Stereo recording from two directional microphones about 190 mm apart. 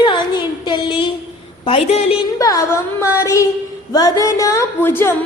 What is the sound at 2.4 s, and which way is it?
A woman's voice, 20° left (ahead or behind).